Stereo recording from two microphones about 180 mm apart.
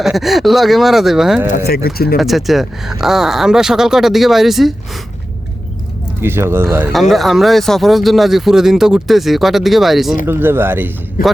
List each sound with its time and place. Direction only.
0.0 s speech: centre (ahead or behind)
1.5 s speech: 55° left (ahead or behind)
2.1 s speech: centre (ahead or behind)
6.2 s speech: 15° right (ahead or behind)
6.9 s speech: centre (ahead or behind)
10.2 s speech: 10° right (ahead or behind)
11.2 s speech: 50° left (ahead or behind)